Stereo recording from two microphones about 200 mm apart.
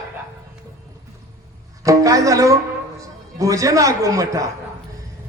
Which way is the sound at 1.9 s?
15° right (ahead or behind).